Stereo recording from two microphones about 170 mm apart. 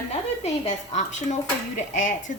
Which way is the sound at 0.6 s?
45° left (ahead or behind).